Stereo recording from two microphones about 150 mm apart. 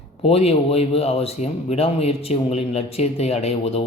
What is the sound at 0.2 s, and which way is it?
A man's voice, 40° left (ahead or behind).